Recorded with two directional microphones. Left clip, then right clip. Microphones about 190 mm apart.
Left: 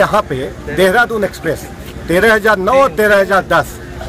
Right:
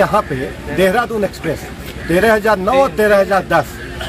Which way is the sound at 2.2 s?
25° left (ahead or behind).